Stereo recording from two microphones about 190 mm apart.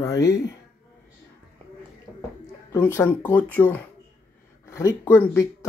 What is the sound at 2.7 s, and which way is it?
Speech, 15° left (ahead or behind).